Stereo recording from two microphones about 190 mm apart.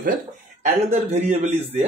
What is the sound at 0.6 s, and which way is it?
A man's voice, 35° right (ahead or behind).